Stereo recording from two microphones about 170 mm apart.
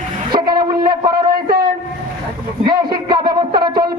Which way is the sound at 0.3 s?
25° right (ahead or behind).